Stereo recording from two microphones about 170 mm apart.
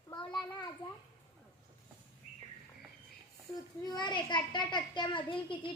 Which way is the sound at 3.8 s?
25° left (ahead or behind).